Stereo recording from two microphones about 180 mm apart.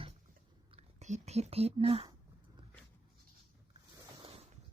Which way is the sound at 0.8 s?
40° right (ahead or behind).